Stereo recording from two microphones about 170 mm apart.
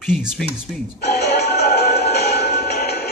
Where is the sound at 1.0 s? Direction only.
70° left (ahead or behind).